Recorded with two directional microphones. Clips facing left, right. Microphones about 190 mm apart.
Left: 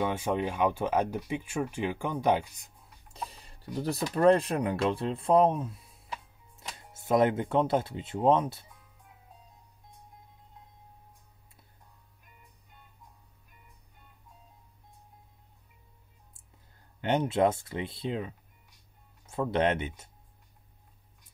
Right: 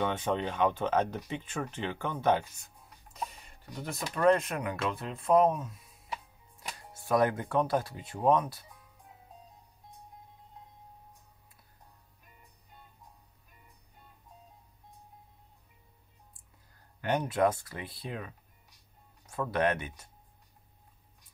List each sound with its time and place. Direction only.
0.0 s speech: 10° left (ahead or behind)
3.3 s speech: 35° left (ahead or behind)
7.0 s speech: 20° left (ahead or behind)
17.0 s speech: 25° left (ahead or behind)
19.3 s speech: 25° left (ahead or behind)